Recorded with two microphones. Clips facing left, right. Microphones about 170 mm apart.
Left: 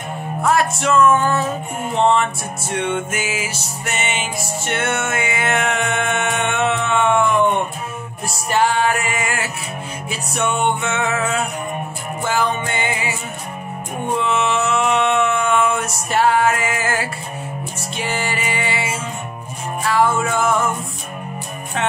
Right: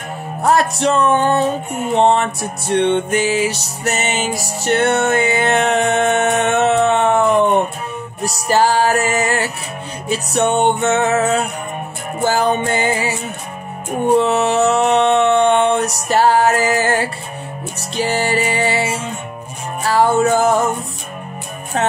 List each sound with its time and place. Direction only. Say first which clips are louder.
0.4 s music: right 3 dB; 30° right (ahead or behind)
14.1 s music: right 5 dB; 40° right (ahead or behind)